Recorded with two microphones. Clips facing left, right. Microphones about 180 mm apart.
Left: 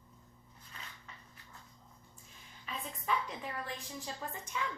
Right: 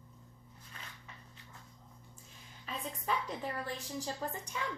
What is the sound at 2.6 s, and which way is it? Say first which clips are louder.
A woman's voice: right 2 dB; 35° right (ahead or behind).